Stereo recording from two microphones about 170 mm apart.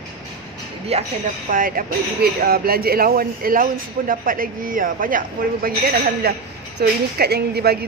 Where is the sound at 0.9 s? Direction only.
40° right (ahead or behind).